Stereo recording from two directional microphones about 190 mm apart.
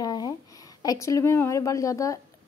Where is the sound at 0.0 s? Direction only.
20° left (ahead or behind).